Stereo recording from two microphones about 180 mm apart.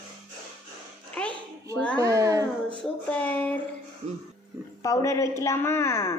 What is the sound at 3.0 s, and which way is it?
Speech, 5° left (ahead or behind).